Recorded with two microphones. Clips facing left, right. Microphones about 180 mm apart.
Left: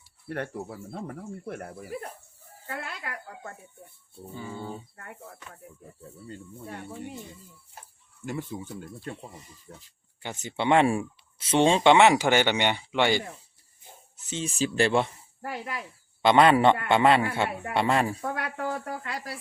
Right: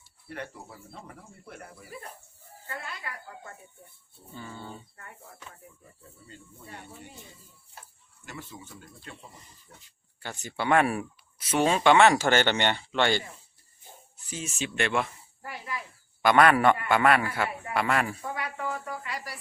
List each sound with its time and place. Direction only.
0.3 s speech: 55° left (ahead or behind)
4.4 s speech: 10° left (ahead or behind)
6.2 s speech: 50° left (ahead or behind)
8.8 s speech: 50° left (ahead or behind)
10.2 s speech: 20° left (ahead or behind)
14.3 s speech: 30° left (ahead or behind)
15.4 s speech: 65° left (ahead or behind)
16.2 s a man's voice: 20° left (ahead or behind)
18.2 s speech: 60° left (ahead or behind)
18.6 s speech: 40° left (ahead or behind)